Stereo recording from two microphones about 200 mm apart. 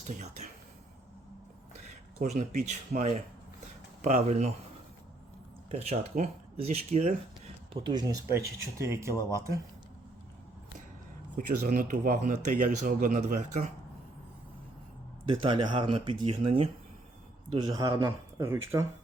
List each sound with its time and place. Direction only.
0.1 s speech: 35° right (ahead or behind)
2.1 s speech: 35° right (ahead or behind)
5.7 s speech: 35° right (ahead or behind)
7.7 s speech: 20° right (ahead or behind)
11.3 s speech: 45° right (ahead or behind)
15.3 s speech: 25° right (ahead or behind)